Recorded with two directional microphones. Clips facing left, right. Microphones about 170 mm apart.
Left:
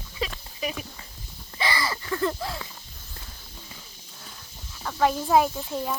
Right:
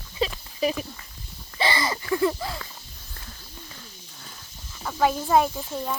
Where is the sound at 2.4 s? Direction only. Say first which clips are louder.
Even; centre (ahead or behind).